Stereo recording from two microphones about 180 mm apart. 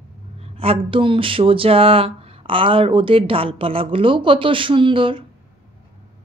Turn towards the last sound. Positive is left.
turn(degrees=-30)  # may be behind; listen again after turning